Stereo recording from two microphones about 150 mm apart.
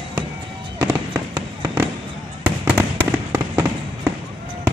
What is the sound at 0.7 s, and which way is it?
Fireworks, 20° right (ahead or behind).